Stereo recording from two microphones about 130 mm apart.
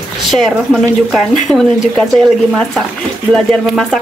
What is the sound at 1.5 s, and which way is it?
Speech, 10° left (ahead or behind).